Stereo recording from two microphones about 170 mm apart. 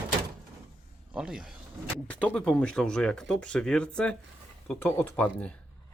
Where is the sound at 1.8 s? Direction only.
10° left (ahead or behind).